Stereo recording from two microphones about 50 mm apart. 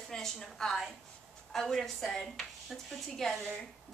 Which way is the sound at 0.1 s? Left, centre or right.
Centre.